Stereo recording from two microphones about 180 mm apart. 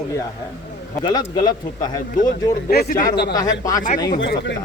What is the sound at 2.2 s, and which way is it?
Speech, 55° left (ahead or behind).